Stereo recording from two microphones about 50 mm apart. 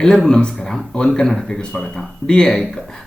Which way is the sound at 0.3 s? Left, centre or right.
Centre.